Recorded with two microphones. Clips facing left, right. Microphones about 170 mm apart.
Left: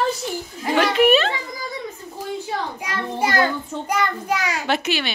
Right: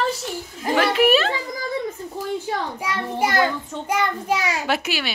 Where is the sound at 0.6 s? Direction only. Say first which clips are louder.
Left 1 dB; 5° right (ahead or behind).